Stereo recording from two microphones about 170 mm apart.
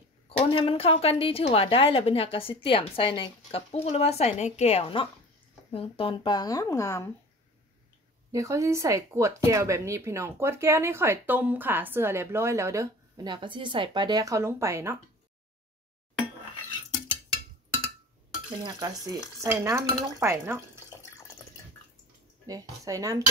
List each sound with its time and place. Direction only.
0.4 s a woman's voice: 35° left (ahead or behind); by 7.1 s 15° left (ahead or behind)
8.3 s speech: 20° right (ahead or behind)
18.6 s stir: 20° right (ahead or behind)
20.2 s speech: 15° right (ahead or behind)
22.5 s stir: 20° right (ahead or behind)